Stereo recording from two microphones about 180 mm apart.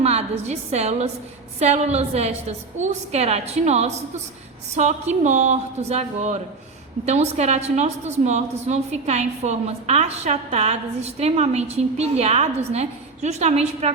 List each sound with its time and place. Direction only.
0.0 s a woman's voice: 35° right (ahead or behind)